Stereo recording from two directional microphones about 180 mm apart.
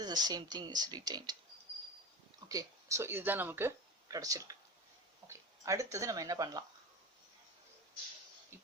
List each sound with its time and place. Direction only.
0.0 s speech: 20° right (ahead or behind)
2.5 s speech: 20° right (ahead or behind)